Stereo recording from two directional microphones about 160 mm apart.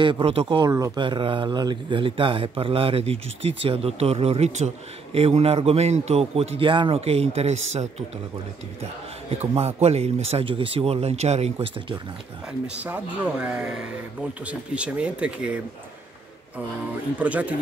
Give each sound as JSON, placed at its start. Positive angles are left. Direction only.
{"t": 0.0, "sound": "speech", "side_deg": -35}
{"t": 9.3, "sound": "speech", "side_deg": -40}
{"t": 12.8, "sound": "speech", "side_deg": -10}
{"t": 17.2, "sound": "speech", "side_deg": -10}